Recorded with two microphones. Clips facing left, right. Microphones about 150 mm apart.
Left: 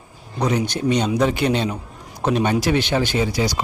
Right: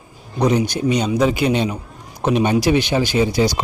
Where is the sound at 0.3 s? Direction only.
15° right (ahead or behind).